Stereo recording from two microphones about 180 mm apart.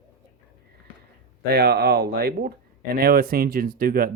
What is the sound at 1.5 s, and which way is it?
Speech, 60° right (ahead or behind).